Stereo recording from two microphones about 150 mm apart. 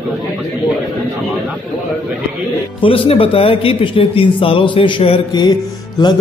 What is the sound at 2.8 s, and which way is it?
A man's voice, 35° left (ahead or behind).